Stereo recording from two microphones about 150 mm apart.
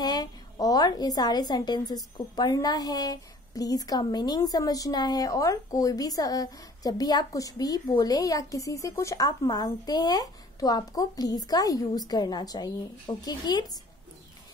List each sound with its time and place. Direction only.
0.0 s a woman's voice: 25° left (ahead or behind)